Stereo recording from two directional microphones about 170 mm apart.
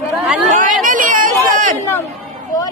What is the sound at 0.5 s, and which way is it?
Speech, 50° right (ahead or behind).